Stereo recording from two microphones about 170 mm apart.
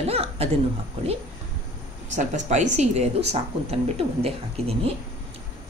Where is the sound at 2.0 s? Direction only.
45° right (ahead or behind).